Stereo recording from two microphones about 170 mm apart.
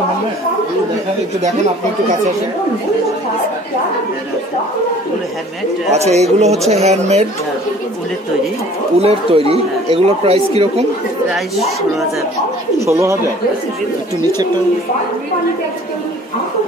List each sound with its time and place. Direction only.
5.9 s speech: 40° right (ahead or behind)
9.0 s speech: 35° right (ahead or behind)
11.2 s speech: centre (ahead or behind)
12.8 s speech: 15° right (ahead or behind)